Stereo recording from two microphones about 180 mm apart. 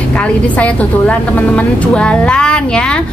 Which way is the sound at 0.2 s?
5° left (ahead or behind).